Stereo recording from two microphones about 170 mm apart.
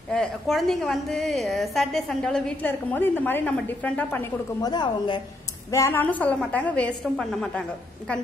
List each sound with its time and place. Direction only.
0.1 s a woman's voice: 5° left (ahead or behind); by 5.2 s 25° left (ahead or behind)
5.7 s a woman's voice: 15° left (ahead or behind)